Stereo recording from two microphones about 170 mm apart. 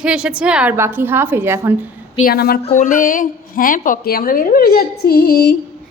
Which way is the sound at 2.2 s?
65° left (ahead or behind).